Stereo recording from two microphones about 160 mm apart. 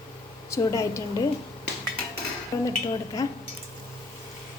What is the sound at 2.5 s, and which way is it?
Speech, 20° left (ahead or behind).